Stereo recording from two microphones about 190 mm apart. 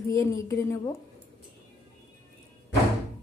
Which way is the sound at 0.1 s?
15° left (ahead or behind).